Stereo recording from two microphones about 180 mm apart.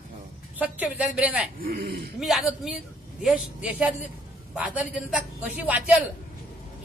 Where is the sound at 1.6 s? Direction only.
55° right (ahead or behind).